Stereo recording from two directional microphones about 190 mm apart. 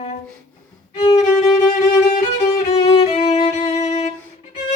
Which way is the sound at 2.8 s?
30° left (ahead or behind).